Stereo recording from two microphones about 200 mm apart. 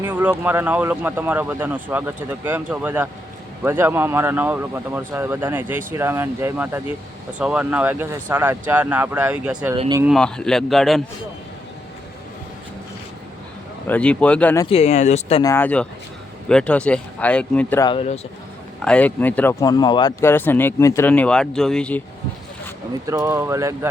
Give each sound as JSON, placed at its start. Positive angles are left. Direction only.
{"t": 0.0, "sound": "speech", "side_deg": -10}
{"t": 9.7, "sound": "speech", "side_deg": -25}
{"t": 10.0, "sound": "speech", "side_deg": 0}
{"t": 13.8, "sound": "speech", "side_deg": 5}
{"t": 14.6, "sound": "speech", "side_deg": 30}
{"t": 15.4, "sound": "speech", "side_deg": 10}
{"t": 17.8, "sound": "speech", "side_deg": 30}
{"t": 18.9, "sound": "speech", "side_deg": 5}
{"t": 23.0, "sound": "speech", "side_deg": -15}